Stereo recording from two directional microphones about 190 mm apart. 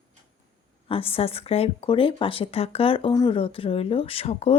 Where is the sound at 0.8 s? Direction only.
30° left (ahead or behind).